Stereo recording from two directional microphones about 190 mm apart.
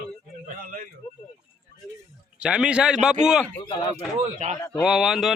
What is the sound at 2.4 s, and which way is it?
Speech, 5° right (ahead or behind).